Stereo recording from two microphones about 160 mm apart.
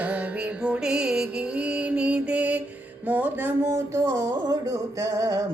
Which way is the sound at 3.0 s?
10° right (ahead or behind).